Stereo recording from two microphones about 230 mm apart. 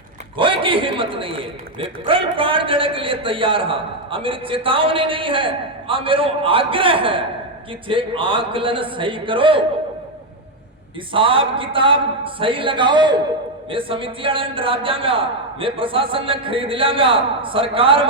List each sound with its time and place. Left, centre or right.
0.3 s a man's voice: right
11.1 s a man's voice: right